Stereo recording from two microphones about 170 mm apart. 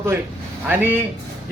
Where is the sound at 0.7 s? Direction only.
10° right (ahead or behind).